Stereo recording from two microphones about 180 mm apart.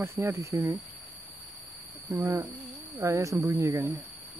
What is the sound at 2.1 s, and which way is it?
Speech, 20° right (ahead or behind).